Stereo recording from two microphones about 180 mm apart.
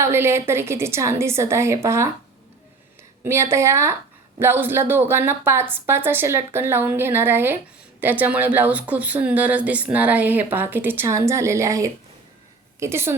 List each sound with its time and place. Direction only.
0.0 s speech: 15° right (ahead or behind)
3.2 s speech: 15° right (ahead or behind)